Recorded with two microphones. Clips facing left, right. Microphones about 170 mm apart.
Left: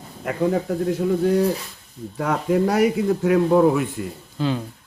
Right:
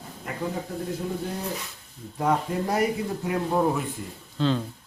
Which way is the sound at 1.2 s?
85° left.